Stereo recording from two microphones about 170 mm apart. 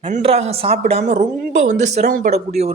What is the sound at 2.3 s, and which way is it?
Speech, 40° right (ahead or behind).